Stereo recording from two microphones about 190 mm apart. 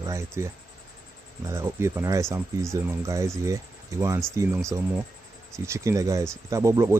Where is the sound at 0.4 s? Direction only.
15° right (ahead or behind).